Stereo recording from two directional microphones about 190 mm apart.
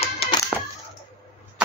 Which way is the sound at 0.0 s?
30° left (ahead or behind).